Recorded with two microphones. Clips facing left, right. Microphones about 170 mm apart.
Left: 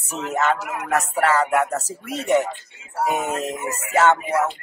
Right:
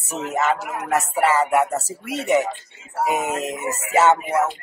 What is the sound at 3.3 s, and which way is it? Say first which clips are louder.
Speech: even; 20° right (ahead or behind).